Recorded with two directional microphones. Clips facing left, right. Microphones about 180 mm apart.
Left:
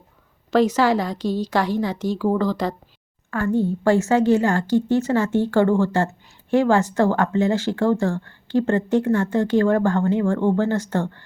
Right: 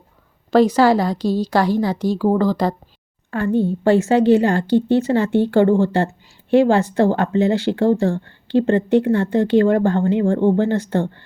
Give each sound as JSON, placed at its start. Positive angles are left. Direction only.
{"t": 0.5, "sound": "a woman's voice", "side_deg": -35}
{"t": 3.2, "sound": "speech", "side_deg": -20}